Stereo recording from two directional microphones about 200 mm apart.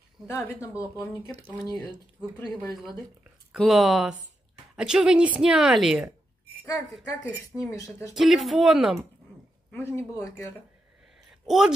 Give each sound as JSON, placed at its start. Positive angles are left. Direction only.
{"t": 0.3, "sound": "speech", "side_deg": 15}
{"t": 0.7, "sound": "speech", "side_deg": -10}
{"t": 1.6, "sound": "speech", "side_deg": 20}
{"t": 3.5, "sound": "a woman's voice", "side_deg": 0}
{"t": 9.7, "sound": "speech", "side_deg": 10}
{"t": 11.4, "sound": "a woman's voice", "side_deg": 0}